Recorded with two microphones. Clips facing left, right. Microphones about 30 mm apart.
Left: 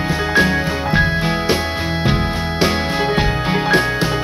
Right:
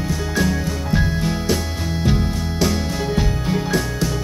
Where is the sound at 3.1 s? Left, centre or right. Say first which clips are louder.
Left 4 dB; left.